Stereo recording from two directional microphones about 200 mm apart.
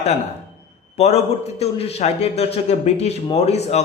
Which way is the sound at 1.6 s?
30° left (ahead or behind).